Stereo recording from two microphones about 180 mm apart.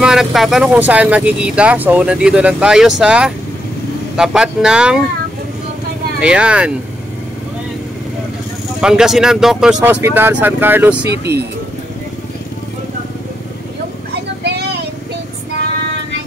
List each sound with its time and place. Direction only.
0.0 s speech: 5° right (ahead or behind)
6.1 s speech: 5° right (ahead or behind)
8.8 s speech: 5° right (ahead or behind)
11.1 s speech: 65° right (ahead or behind)
14.4 s vehicle: 65° right (ahead or behind)